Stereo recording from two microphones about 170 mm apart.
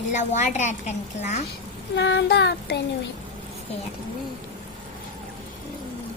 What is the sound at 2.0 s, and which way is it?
Child singing, 90° left.